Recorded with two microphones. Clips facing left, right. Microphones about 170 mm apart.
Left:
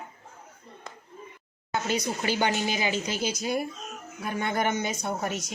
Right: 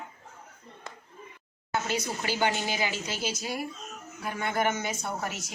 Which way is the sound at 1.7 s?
15° left (ahead or behind).